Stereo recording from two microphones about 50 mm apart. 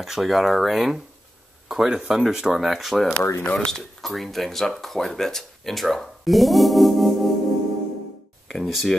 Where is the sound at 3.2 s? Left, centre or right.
Left.